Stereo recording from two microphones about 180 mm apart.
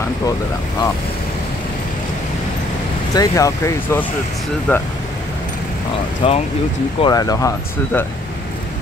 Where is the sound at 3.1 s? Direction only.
20° left (ahead or behind).